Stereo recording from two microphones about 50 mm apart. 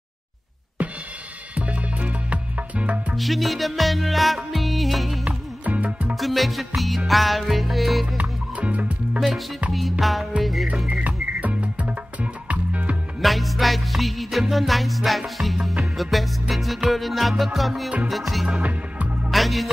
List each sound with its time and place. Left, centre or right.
1.5 s music: right
3.2 s music: centre
5.2 s music: right
6.1 s music: centre
8.2 s music: right
9.7 s music: centre
10.9 s music: right
13.2 s music: centre
18.6 s music: right
19.3 s music: centre